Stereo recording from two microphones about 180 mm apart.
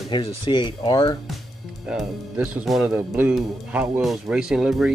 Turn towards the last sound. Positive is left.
turn(degrees=-5)  # may be behind; listen again after turning